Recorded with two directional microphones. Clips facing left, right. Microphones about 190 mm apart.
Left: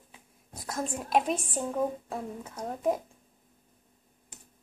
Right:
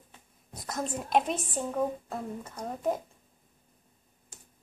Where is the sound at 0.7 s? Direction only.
Centre (ahead or behind).